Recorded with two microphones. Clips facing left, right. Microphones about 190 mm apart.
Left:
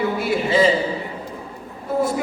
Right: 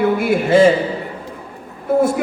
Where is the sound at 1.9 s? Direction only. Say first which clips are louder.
Right 6 dB; 50° right (ahead or behind).